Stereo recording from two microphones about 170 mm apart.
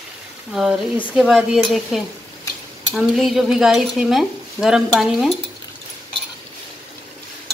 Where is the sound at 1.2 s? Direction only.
Centre (ahead or behind).